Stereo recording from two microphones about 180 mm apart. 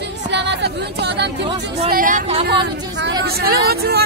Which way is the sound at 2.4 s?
70° right (ahead or behind).